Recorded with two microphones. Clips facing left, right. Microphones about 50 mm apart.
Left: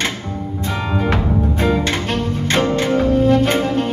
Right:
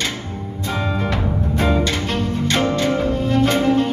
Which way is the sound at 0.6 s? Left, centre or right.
Centre.